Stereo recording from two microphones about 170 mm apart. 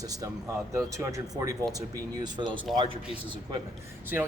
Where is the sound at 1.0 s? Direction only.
20° right (ahead or behind).